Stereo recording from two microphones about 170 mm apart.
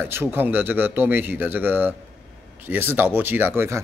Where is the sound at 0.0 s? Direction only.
15° right (ahead or behind).